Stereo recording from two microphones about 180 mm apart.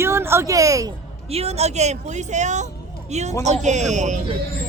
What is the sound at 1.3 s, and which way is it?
A woman's voice, 35° right (ahead or behind).